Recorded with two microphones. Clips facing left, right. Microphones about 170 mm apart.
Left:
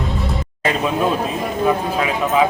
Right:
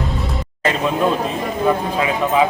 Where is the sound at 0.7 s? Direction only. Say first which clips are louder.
Right 1 dB; 5° left (ahead or behind).